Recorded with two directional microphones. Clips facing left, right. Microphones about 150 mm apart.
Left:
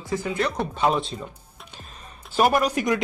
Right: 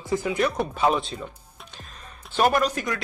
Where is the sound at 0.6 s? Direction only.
Centre (ahead or behind).